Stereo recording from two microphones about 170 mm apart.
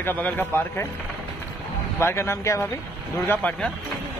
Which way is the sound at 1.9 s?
15° left (ahead or behind).